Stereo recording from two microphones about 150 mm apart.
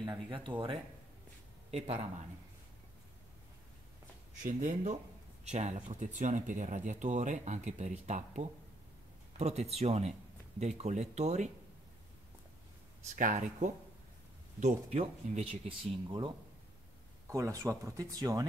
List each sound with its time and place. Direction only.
0.0 s speech: 30° right (ahead or behind)
4.4 s speech: 60° right (ahead or behind)
13.0 s speech: 55° right (ahead or behind)
16.1 s speech: 35° right (ahead or behind)
17.3 s speech: 20° right (ahead or behind)